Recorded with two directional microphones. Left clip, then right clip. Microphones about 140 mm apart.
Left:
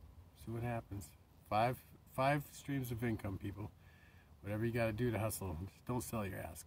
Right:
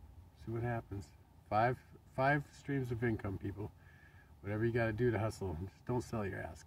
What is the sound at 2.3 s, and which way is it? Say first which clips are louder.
Speech: right 3 dB; 10° left (ahead or behind).